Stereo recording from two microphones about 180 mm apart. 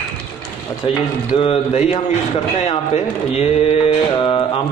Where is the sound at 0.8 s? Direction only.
30° left (ahead or behind).